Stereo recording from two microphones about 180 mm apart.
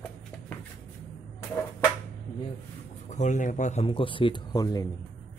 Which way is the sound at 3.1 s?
40° left (ahead or behind).